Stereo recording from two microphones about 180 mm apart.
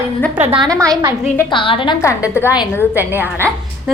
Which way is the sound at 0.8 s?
20° right (ahead or behind).